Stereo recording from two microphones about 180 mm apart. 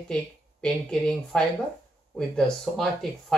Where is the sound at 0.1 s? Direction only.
5° left (ahead or behind).